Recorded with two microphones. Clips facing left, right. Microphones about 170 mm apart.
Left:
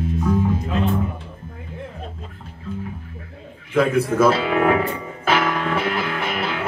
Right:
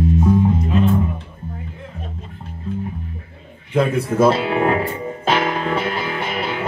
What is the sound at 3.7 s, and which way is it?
Speech, 30° right (ahead or behind).